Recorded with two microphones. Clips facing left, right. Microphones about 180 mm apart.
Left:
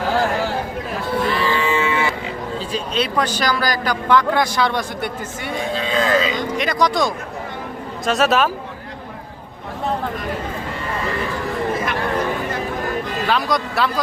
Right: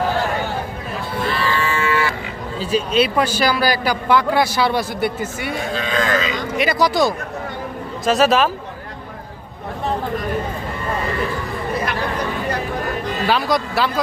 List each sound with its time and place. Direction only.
1.4 s livestock: 15° left (ahead or behind)
2.6 s a man's voice: 10° right (ahead or behind)
5.7 s cattle: 30° left (ahead or behind)
6.6 s a man's voice: 5° right (ahead or behind)
13.2 s speech: centre (ahead or behind)